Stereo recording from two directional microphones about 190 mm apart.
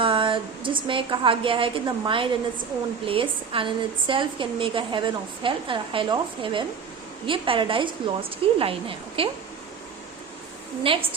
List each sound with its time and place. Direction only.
0.0 s a woman's voice: 25° right (ahead or behind)
10.9 s a woman's voice: 30° right (ahead or behind)